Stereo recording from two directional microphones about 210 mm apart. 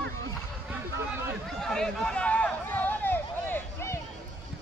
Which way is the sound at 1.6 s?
Centre (ahead or behind).